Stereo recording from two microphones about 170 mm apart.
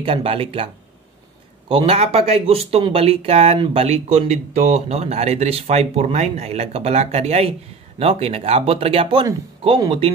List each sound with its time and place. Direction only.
0.0 s speech: 30° right (ahead or behind)
1.7 s speech: 35° right (ahead or behind)